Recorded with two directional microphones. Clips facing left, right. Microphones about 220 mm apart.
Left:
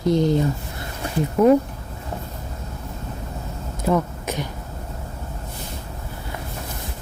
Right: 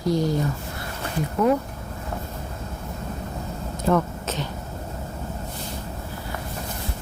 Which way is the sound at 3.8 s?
10° left (ahead or behind).